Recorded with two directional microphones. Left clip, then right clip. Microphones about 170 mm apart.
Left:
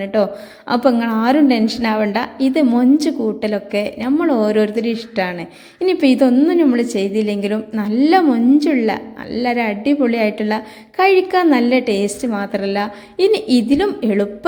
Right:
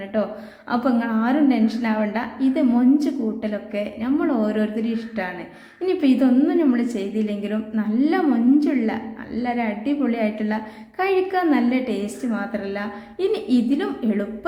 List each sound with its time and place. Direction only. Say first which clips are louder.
0.0 s a woman's voice: left 7 dB; 45° left (ahead or behind)